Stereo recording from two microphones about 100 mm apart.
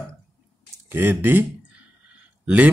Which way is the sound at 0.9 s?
20° right (ahead or behind).